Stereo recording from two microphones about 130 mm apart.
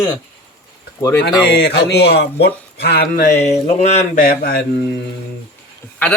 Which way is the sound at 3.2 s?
65° left (ahead or behind).